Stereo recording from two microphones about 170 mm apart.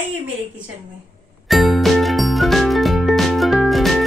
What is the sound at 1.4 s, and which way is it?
Music, centre (ahead or behind).